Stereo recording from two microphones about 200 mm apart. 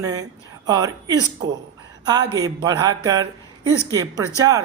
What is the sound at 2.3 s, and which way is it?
Speech, 20° right (ahead or behind).